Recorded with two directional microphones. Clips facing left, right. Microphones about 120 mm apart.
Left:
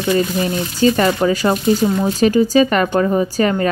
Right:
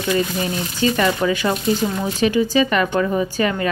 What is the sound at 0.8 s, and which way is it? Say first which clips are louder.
Speech: left 4 dB; 40° left (ahead or behind).